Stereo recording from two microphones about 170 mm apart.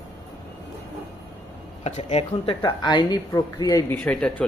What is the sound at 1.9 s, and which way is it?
Speech, 40° left (ahead or behind).